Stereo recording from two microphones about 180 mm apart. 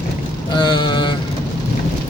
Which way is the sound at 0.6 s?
25° left (ahead or behind).